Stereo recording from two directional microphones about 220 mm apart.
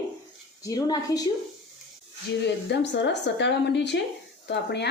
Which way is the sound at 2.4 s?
50° left (ahead or behind).